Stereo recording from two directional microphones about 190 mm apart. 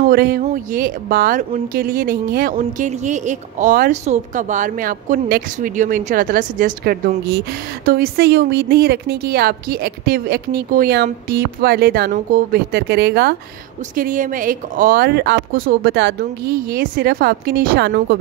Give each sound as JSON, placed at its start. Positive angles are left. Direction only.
{"t": 0.0, "sound": "a woman's voice", "side_deg": -55}
{"t": 2.8, "sound": "a woman's voice", "side_deg": -40}
{"t": 13.9, "sound": "a woman's voice", "side_deg": -45}